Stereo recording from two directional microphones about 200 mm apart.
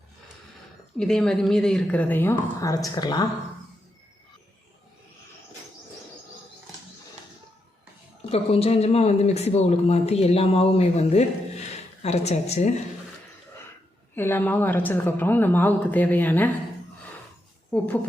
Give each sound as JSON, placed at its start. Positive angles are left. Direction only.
{"t": 0.9, "sound": "a woman's voice", "side_deg": 0}
{"t": 8.3, "sound": "speech", "side_deg": 30}
{"t": 14.2, "sound": "a woman's voice", "side_deg": 10}
{"t": 17.7, "sound": "speech", "side_deg": 10}